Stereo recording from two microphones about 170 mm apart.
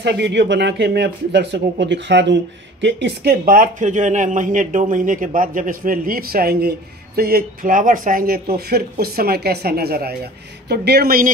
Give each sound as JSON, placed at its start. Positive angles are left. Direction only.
{"t": 0.0, "sound": "speech", "side_deg": -90}